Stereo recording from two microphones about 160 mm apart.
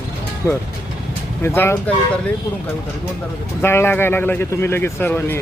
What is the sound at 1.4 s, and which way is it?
Speech, 15° left (ahead or behind).